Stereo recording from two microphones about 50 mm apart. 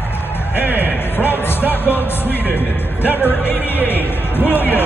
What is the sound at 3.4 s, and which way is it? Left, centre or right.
Music, left.